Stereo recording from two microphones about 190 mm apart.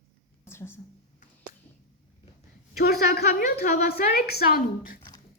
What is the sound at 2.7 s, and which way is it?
A woman's voice, 55° left (ahead or behind).